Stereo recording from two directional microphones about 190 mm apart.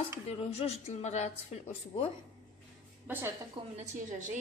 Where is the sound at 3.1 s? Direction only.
10° right (ahead or behind).